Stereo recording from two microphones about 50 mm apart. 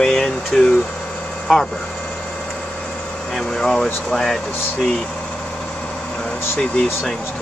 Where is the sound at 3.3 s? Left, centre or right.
Centre.